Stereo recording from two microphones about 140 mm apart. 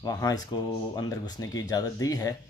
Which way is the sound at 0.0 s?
30° left (ahead or behind).